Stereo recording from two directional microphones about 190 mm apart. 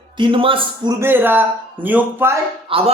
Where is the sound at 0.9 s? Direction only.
10° right (ahead or behind).